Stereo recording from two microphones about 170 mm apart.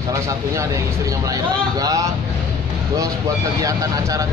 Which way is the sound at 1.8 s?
20° right (ahead or behind).